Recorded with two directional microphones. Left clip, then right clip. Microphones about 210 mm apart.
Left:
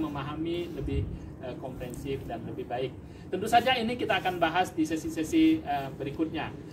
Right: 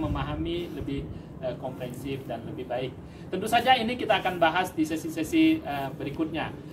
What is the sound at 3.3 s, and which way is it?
Speech, 15° right (ahead or behind).